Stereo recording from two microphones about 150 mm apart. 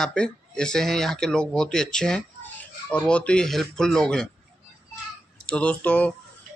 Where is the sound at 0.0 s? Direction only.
5° left (ahead or behind).